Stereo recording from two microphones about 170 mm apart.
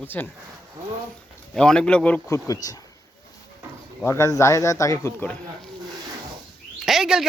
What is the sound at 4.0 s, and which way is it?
A man's voice, 15° left (ahead or behind).